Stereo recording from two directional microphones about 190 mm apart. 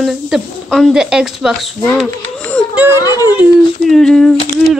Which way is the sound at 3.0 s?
20° left (ahead or behind).